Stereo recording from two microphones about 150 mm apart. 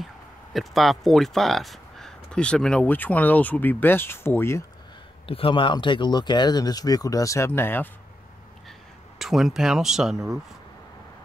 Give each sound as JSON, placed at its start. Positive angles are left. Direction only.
{"t": 0.0, "sound": "speech", "side_deg": 0}
{"t": 5.2, "sound": "speech", "side_deg": 40}
{"t": 9.2, "sound": "speech", "side_deg": 0}